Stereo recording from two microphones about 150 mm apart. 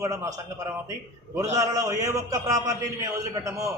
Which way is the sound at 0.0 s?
20° right (ahead or behind).